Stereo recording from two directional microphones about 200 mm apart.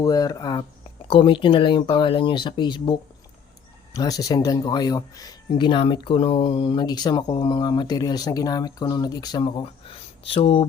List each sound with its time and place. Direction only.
0.0 s speech: 15° left (ahead or behind)